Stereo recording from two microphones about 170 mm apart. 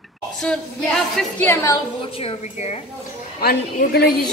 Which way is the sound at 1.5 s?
20° left (ahead or behind).